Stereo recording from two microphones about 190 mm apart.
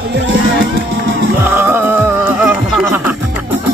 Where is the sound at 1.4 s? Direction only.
10° right (ahead or behind).